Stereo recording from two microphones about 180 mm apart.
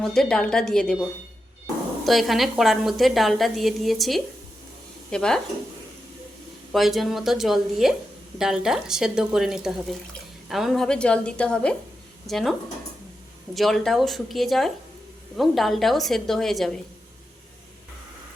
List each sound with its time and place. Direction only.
0.0 s a woman's voice: 5° left (ahead or behind)
2.0 s a woman's voice: centre (ahead or behind)
6.7 s a woman's voice: centre (ahead or behind)